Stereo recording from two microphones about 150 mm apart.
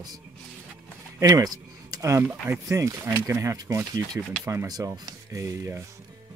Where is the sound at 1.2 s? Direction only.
25° right (ahead or behind).